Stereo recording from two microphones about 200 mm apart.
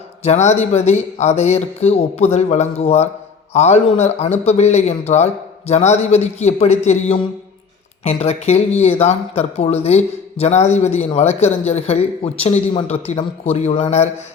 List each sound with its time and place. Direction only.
0.2 s speech: 35° left (ahead or behind)